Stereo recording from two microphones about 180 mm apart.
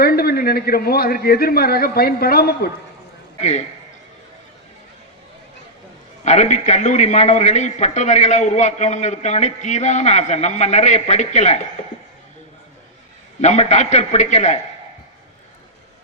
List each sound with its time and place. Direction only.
0.0 s a man's voice: 60° left (ahead or behind)
3.4 s a man's voice: 40° left (ahead or behind)
6.2 s a man's voice: 40° left (ahead or behind)
13.4 s a man's voice: 40° left (ahead or behind)